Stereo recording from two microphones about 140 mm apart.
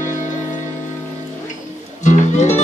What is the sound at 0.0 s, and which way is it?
Music, 65° left (ahead or behind).